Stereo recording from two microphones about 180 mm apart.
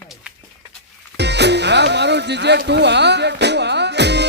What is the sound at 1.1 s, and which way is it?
Music, 70° right (ahead or behind).